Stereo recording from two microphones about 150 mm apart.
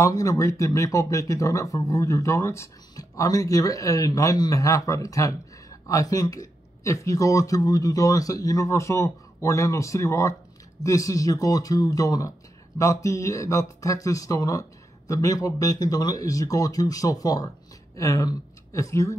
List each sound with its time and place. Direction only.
0.0 s speech: 20° left (ahead or behind)